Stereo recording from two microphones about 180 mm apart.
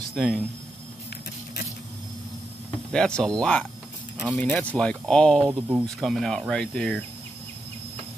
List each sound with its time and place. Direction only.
0.1 s speech: 5° right (ahead or behind)
2.9 s speech: 5° left (ahead or behind)
5.5 s speech: 10° right (ahead or behind)
5.9 s speech: centre (ahead or behind)